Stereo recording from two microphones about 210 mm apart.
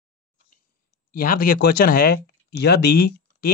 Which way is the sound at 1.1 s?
40° left (ahead or behind).